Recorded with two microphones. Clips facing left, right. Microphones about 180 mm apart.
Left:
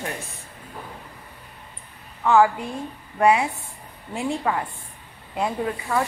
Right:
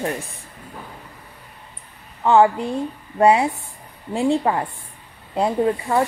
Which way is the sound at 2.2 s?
30° right (ahead or behind).